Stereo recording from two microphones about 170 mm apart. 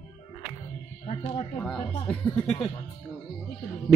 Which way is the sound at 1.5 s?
5° left (ahead or behind).